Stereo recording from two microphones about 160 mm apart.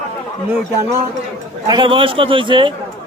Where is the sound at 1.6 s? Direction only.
30° right (ahead or behind).